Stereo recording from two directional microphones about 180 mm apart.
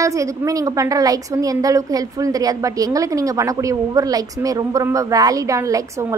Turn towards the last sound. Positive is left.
turn(degrees=-15)  # may be behind; listen again after turning